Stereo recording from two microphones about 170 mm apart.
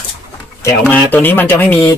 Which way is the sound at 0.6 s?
15° left (ahead or behind).